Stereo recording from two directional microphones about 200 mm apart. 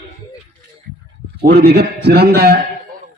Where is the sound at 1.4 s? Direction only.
50° right (ahead or behind).